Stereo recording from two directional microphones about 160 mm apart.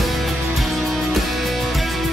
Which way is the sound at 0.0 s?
Centre (ahead or behind).